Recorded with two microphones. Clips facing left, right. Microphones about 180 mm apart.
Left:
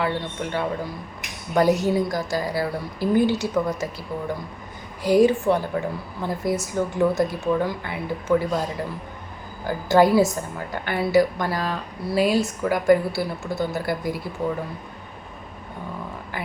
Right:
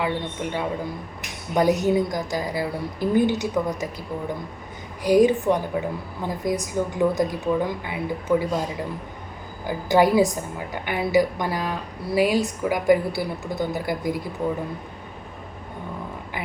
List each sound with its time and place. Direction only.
0.0 s a woman's voice: 15° right (ahead or behind)
5.0 s a woman's voice: 15° right (ahead or behind)
9.6 s a woman's voice: 15° right (ahead or behind)